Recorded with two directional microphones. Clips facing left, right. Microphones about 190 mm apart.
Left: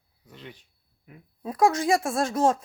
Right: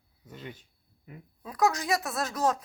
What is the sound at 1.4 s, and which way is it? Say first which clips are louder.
Speech: left 5 dB; 25° left (ahead or behind).